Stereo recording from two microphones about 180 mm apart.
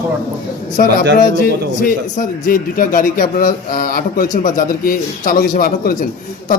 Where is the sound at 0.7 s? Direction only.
50° left (ahead or behind).